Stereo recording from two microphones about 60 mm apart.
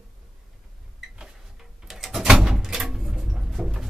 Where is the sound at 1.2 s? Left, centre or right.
Centre.